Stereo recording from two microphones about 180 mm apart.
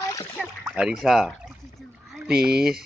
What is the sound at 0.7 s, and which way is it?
Speech, 5° right (ahead or behind).